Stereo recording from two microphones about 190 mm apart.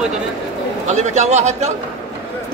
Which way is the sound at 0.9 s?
35° right (ahead or behind).